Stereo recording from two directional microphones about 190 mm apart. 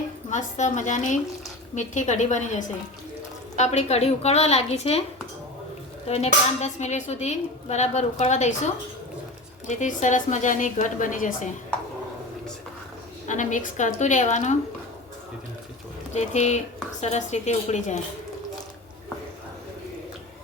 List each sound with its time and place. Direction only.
0.3 s speech: 40° left (ahead or behind)
6.1 s speech: 35° left (ahead or behind)
13.2 s speech: 40° left (ahead or behind)
16.1 s speech: 35° left (ahead or behind)